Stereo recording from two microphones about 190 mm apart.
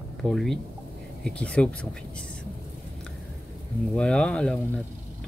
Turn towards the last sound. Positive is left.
turn(degrees=5)  # may be behind; listen again after turning